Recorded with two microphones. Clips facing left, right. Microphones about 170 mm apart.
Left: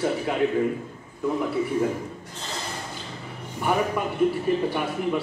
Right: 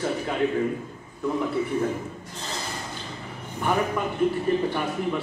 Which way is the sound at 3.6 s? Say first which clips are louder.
Left 1 dB; 10° left (ahead or behind).